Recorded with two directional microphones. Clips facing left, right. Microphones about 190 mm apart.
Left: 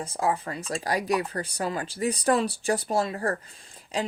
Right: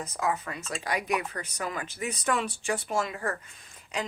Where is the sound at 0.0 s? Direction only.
30° left (ahead or behind).